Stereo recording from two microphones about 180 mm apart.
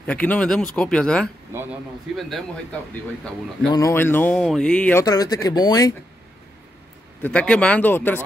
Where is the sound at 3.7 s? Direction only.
15° left (ahead or behind).